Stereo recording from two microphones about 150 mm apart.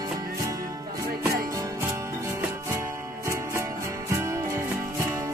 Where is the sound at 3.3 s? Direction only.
20° right (ahead or behind).